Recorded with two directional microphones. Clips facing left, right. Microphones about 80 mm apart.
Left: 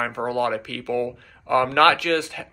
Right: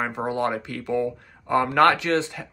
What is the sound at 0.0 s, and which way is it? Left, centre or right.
Speech, right.